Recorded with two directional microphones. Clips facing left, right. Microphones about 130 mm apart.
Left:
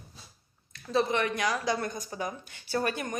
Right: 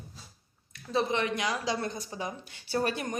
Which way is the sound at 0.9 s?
20° right (ahead or behind).